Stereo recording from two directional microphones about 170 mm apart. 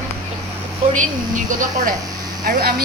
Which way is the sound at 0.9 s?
50° right (ahead or behind).